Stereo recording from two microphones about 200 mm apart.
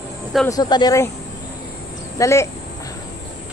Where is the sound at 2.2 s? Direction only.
15° left (ahead or behind).